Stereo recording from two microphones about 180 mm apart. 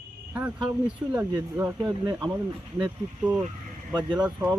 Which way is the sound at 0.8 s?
10° right (ahead or behind).